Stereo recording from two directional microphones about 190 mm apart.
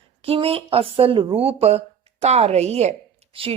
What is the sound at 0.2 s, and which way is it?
A woman's voice, 30° right (ahead or behind).